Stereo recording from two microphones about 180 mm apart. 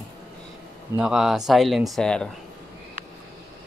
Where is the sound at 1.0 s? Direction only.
5° right (ahead or behind).